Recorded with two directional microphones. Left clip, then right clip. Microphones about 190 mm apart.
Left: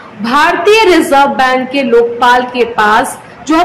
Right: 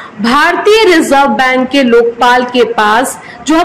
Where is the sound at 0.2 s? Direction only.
25° right (ahead or behind).